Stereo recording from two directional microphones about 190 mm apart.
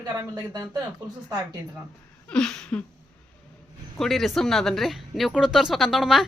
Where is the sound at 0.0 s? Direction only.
20° right (ahead or behind).